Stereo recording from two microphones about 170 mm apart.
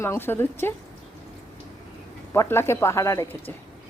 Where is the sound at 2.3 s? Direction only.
15° left (ahead or behind).